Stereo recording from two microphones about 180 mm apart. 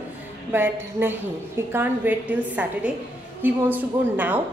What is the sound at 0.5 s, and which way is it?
A woman's voice, 10° right (ahead or behind).